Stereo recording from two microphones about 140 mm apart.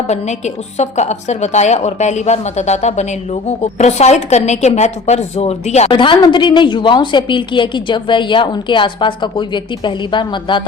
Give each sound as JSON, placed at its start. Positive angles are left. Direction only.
{"t": 0.1, "sound": "a woman's voice", "side_deg": 55}
{"t": 5.9, "sound": "a woman's voice", "side_deg": 35}